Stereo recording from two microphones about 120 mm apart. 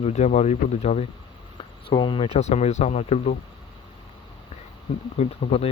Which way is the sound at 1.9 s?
45° left (ahead or behind).